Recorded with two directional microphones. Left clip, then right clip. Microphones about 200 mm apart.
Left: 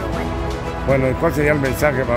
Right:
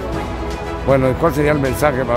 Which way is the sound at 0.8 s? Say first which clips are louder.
Right 3 dB; 15° right (ahead or behind).